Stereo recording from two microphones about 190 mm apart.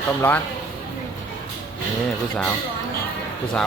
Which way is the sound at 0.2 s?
10° left (ahead or behind).